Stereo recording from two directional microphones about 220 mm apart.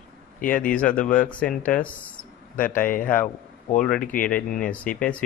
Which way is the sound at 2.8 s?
40° left (ahead or behind).